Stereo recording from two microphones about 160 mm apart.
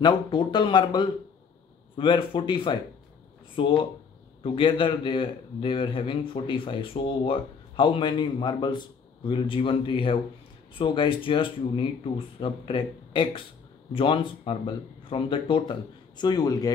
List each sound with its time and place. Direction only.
0.0 s speech: 30° left (ahead or behind)